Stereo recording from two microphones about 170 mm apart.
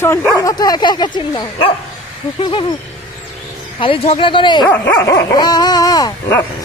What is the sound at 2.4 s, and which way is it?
Speech, 30° left (ahead or behind).